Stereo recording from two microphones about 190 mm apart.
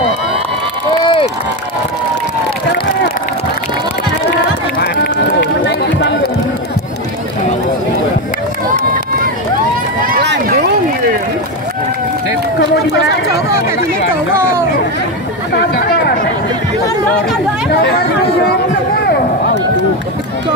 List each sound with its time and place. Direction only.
1.0 s crowd: 25° left (ahead or behind)
4.3 s run: 60° left (ahead or behind)
10.0 s run: 45° right (ahead or behind)
15.5 s chatter: 55° left (ahead or behind)